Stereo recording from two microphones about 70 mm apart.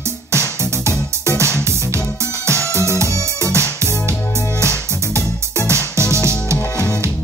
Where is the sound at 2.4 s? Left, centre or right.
Right.